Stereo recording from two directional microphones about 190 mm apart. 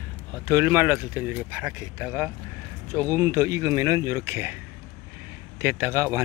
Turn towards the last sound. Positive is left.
turn(degrees=-15)  # may be behind; listen again after turning